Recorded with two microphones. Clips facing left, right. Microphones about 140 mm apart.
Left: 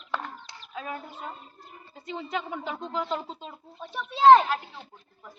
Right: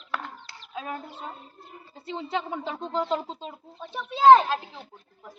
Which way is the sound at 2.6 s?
30° right (ahead or behind).